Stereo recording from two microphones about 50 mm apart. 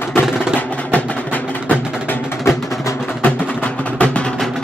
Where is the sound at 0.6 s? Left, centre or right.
Left.